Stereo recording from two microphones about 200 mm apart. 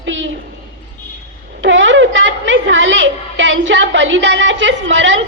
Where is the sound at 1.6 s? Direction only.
65° right (ahead or behind).